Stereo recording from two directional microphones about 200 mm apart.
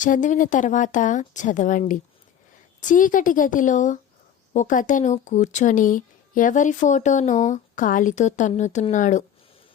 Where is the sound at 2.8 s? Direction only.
40° left (ahead or behind).